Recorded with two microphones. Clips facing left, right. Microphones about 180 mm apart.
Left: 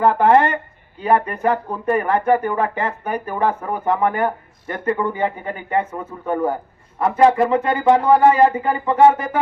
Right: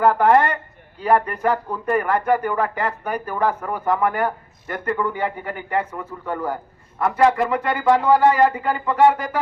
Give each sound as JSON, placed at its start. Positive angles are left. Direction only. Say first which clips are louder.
{"t": 0.0, "sound": "speech", "louder": "left 1 dB", "side_deg": 25}